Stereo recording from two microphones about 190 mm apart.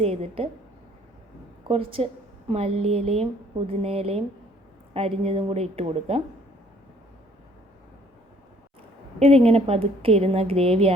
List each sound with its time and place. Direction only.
0.0 s a woman's voice: 30° right (ahead or behind)
1.6 s a woman's voice: 30° right (ahead or behind)
9.1 s a woman's voice: 35° right (ahead or behind)